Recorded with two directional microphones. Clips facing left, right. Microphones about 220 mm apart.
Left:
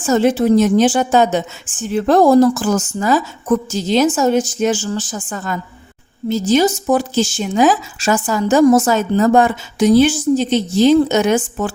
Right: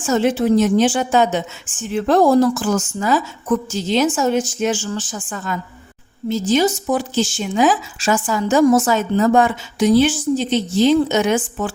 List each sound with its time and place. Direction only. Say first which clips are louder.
0.0 s speech: left 3 dB; 40° left (ahead or behind)